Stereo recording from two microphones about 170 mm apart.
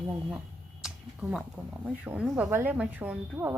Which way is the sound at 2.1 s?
5° right (ahead or behind).